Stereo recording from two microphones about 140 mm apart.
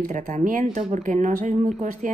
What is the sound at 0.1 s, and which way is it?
A woman's voice, 65° right (ahead or behind).